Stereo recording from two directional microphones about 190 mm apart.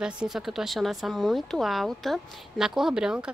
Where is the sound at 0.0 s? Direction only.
5° right (ahead or behind).